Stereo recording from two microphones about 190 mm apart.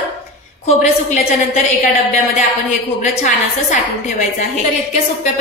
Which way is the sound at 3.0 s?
40° left (ahead or behind).